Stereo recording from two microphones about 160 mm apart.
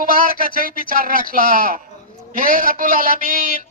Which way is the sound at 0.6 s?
60° right (ahead or behind).